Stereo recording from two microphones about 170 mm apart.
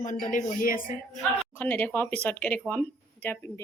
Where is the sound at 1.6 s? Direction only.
10° left (ahead or behind).